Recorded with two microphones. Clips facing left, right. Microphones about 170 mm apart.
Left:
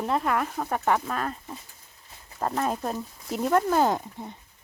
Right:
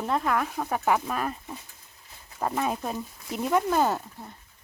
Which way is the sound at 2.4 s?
5° right (ahead or behind).